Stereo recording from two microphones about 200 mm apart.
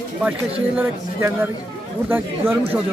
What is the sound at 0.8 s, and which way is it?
A man's voice, 10° right (ahead or behind).